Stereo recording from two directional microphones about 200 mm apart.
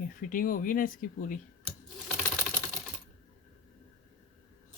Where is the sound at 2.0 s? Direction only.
5° left (ahead or behind).